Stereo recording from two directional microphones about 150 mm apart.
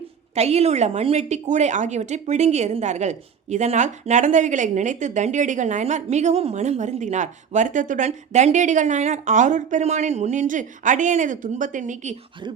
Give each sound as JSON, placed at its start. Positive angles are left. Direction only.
{"t": 0.3, "sound": "a woman's voice", "side_deg": -45}